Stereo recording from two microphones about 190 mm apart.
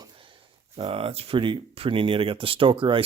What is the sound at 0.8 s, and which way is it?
Speech, 30° right (ahead or behind).